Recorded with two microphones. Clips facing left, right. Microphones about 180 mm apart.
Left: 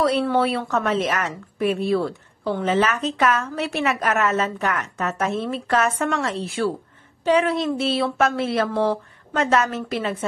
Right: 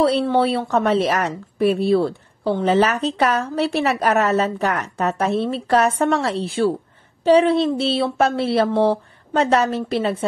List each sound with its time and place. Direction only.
0.0 s a woman's voice: 25° right (ahead or behind)